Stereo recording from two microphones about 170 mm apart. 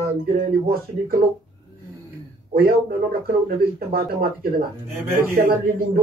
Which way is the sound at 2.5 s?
60° right (ahead or behind).